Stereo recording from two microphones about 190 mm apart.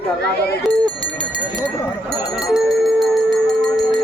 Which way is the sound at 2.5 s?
Centre (ahead or behind).